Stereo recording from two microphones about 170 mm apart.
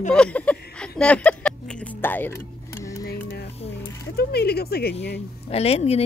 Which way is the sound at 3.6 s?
65° left (ahead or behind).